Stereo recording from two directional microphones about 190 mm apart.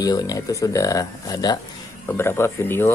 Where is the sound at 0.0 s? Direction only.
20° left (ahead or behind).